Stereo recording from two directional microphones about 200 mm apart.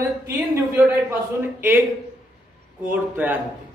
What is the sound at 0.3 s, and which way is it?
Speech, 10° right (ahead or behind).